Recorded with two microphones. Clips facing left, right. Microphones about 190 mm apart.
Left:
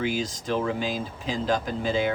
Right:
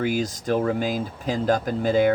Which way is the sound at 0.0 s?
50° right (ahead or behind).